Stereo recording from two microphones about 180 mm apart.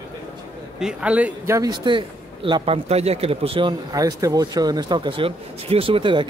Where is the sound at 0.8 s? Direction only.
5° right (ahead or behind).